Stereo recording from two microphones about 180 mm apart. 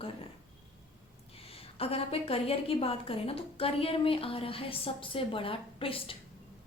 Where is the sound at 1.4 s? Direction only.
35° left (ahead or behind).